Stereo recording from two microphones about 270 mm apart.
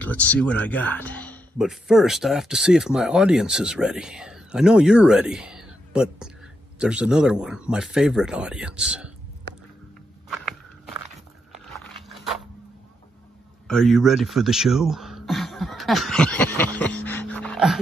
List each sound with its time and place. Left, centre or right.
0.0 s speech: centre
10.2 s walk: centre
11.5 s biting: centre
13.7 s speech: centre